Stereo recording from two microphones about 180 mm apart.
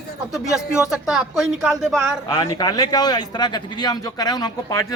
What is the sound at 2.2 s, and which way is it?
A man's voice, 20° left (ahead or behind).